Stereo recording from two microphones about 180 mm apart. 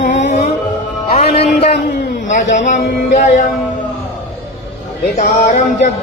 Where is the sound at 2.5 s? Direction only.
45° left (ahead or behind).